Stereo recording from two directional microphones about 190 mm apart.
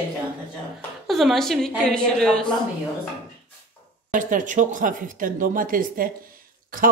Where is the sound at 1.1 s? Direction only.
Centre (ahead or behind).